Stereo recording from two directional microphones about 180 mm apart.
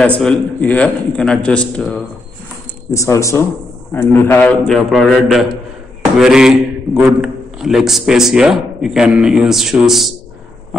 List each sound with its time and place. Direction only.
0.0 s a man's voice: 5° left (ahead or behind)
2.9 s a man's voice: 15° left (ahead or behind); by 10.1 s centre (ahead or behind)